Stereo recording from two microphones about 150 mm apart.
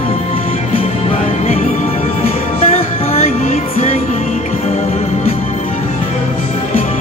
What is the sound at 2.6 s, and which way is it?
Music, 45° left (ahead or behind).